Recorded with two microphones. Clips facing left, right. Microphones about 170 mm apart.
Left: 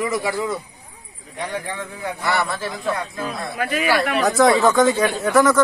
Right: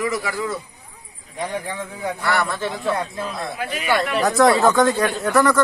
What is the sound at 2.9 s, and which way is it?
Speech, 25° right (ahead or behind).